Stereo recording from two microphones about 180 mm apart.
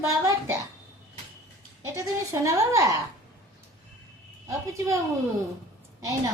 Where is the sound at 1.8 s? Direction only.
15° right (ahead or behind).